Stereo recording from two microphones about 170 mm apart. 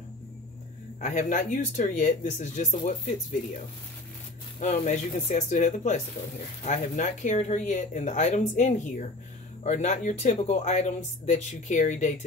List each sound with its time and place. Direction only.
1.0 s speech: 45° left (ahead or behind)
4.6 s speech: 45° left (ahead or behind)